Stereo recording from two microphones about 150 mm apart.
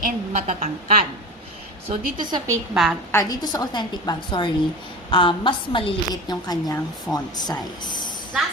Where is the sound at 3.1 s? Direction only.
20° left (ahead or behind).